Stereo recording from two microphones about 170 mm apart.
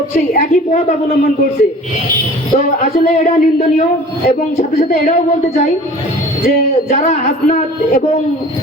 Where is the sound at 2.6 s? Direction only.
45° left (ahead or behind).